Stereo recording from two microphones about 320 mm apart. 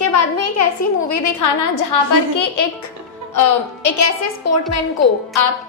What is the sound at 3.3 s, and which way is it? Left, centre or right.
A woman's voice, left.